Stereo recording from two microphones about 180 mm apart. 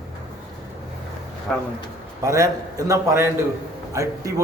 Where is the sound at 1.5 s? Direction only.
5° left (ahead or behind).